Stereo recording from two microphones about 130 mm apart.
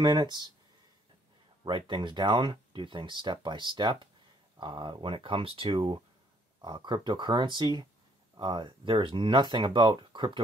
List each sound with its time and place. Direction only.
0.0 s speech: 35° right (ahead or behind)
1.6 s speech: 35° right (ahead or behind)